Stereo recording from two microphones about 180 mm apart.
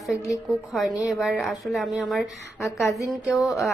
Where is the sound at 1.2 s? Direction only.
Centre (ahead or behind).